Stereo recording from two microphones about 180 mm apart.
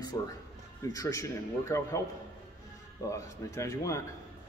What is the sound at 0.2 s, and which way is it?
Speech, 20° left (ahead or behind).